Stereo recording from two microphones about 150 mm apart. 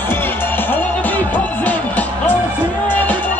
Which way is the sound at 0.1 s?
15° left (ahead or behind).